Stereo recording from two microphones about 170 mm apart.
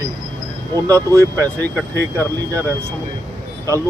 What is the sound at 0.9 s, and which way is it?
Speech, 15° right (ahead or behind).